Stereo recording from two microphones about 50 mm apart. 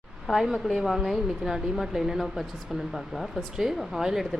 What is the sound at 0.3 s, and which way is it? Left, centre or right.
A woman's voice, centre.